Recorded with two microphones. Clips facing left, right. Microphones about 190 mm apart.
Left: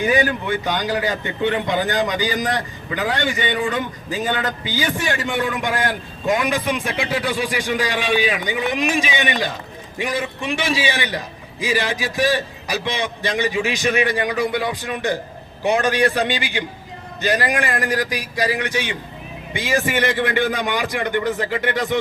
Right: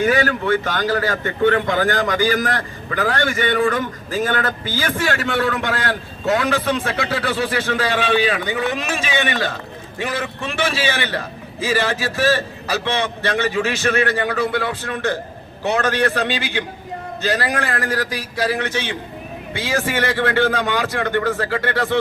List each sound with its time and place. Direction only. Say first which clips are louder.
0.0 s a man's voice: right 1 dB; 15° left (ahead or behind)